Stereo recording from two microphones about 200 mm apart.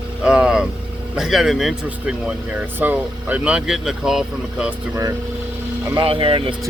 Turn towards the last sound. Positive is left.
turn(degrees=-25)  # may be behind; listen again after turning